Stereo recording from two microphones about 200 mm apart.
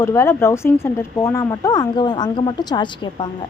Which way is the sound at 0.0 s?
15° left (ahead or behind).